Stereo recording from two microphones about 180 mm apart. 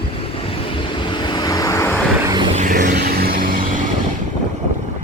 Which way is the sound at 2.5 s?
45° right (ahead or behind).